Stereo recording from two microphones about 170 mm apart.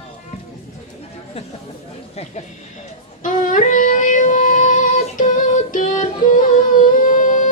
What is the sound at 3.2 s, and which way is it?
Child singing, 50° left (ahead or behind).